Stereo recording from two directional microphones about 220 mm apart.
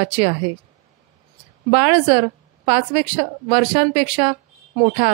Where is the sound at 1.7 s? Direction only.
25° right (ahead or behind).